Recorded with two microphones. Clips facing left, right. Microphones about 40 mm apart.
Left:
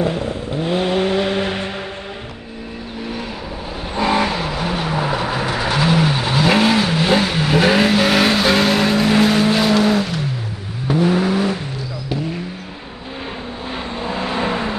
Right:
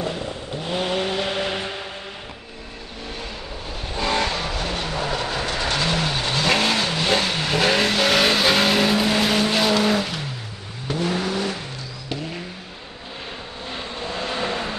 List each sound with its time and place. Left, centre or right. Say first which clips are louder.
0.0 s vehicle: left 7 dB; left
3.9 s vehicle: left 5 dB; centre
10.9 s vehicle: left 7 dB; centre
13.9 s vehicle: left 5 dB; centre